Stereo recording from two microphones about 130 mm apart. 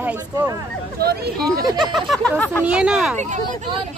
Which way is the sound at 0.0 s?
15° right (ahead or behind).